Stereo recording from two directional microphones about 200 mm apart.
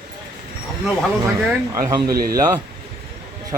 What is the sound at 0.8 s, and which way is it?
A man's voice, 15° right (ahead or behind).